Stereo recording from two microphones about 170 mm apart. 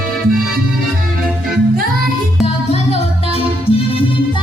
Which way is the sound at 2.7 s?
35° left (ahead or behind).